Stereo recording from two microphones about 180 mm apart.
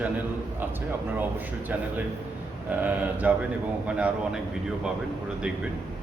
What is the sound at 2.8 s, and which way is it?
A man's voice, 10° right (ahead or behind).